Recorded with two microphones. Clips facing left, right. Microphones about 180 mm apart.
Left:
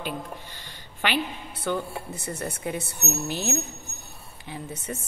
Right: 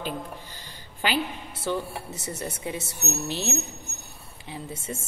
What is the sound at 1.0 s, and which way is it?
A woman's voice, 30° right (ahead or behind).